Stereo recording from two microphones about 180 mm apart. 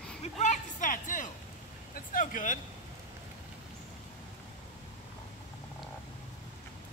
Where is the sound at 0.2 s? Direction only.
40° left (ahead or behind).